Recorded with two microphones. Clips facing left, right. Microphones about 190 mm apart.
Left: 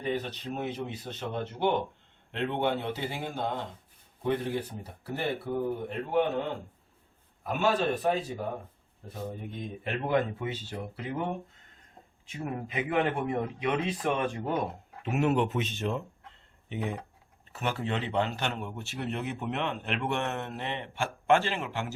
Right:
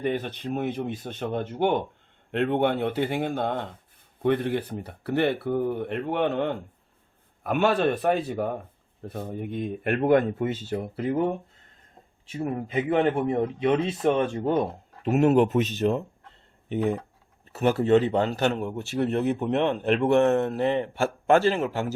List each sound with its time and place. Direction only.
0.0 s speech: 55° right (ahead or behind)
12.3 s a man's voice: 30° right (ahead or behind)
15.0 s a man's voice: 40° right (ahead or behind)